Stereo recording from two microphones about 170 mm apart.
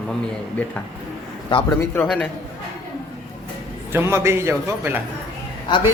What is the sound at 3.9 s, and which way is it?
A man's voice, 15° right (ahead or behind).